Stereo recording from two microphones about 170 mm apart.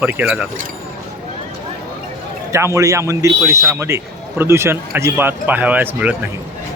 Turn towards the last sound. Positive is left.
turn(degrees=-10)  # may be behind; listen again after turning